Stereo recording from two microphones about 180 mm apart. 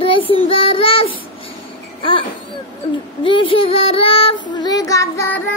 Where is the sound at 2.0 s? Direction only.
30° left (ahead or behind).